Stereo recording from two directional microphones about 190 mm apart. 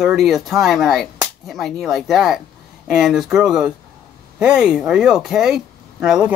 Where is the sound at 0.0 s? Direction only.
Centre (ahead or behind).